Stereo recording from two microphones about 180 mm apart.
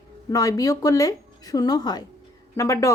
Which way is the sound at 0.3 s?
20° left (ahead or behind).